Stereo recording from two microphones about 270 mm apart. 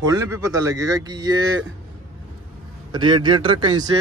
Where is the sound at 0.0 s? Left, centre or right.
Centre.